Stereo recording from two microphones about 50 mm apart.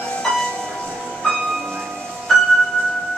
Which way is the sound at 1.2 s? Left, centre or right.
Centre.